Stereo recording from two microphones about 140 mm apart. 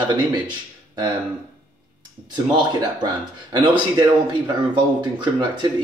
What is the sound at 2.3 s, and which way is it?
Speech, 30° right (ahead or behind).